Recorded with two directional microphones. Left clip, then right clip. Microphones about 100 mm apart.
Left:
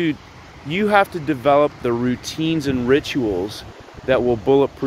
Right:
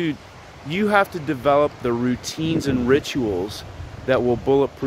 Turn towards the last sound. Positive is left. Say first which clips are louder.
# left 3 dB
turn(degrees=-10)  # may be behind; listen again after turning